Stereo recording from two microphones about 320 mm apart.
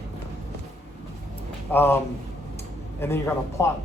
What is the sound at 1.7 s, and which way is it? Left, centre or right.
Speech, centre.